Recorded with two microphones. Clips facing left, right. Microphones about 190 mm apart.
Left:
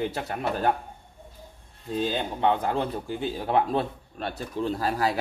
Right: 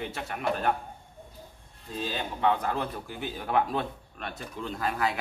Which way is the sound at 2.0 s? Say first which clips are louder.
Left 4 dB; 25° left (ahead or behind).